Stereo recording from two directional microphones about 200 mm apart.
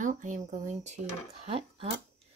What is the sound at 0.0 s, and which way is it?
Speech, 40° right (ahead or behind).